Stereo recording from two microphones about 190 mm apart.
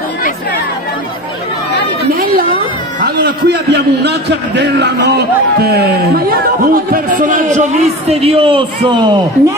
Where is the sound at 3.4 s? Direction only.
65° right (ahead or behind); by 9.1 s 25° right (ahead or behind).